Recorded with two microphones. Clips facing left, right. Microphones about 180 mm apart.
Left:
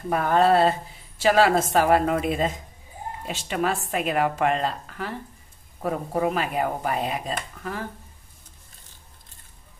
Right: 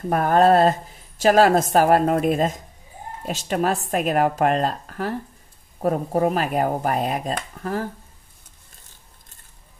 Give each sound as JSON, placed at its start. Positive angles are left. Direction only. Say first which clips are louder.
{"t": 0.1, "sound": "a woman's voice", "louder": "right 3 dB", "side_deg": -45}